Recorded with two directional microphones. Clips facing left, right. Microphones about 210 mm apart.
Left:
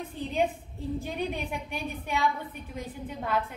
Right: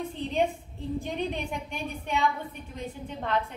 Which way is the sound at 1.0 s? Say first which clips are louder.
Right 1 dB; 5° left (ahead or behind).